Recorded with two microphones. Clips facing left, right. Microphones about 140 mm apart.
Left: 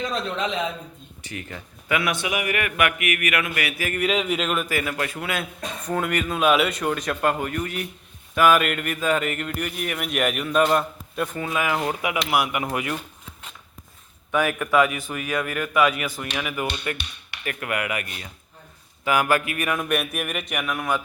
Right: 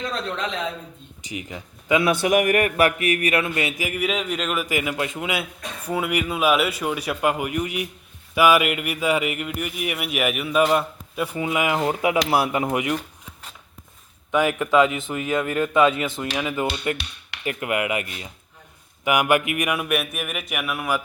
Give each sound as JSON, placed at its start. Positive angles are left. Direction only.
{"t": 1.2, "sound": "speech", "side_deg": -15}
{"t": 2.2, "sound": "a sound", "side_deg": -45}
{"t": 3.8, "sound": "a man's voice", "side_deg": -5}
{"t": 4.6, "sound": "speech", "side_deg": -15}
{"t": 14.3, "sound": "speech", "side_deg": -20}